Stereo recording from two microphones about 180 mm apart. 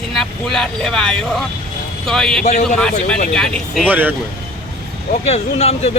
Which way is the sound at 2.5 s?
40° left (ahead or behind).